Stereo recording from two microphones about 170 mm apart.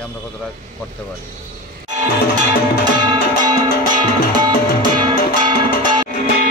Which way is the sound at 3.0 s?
25° right (ahead or behind).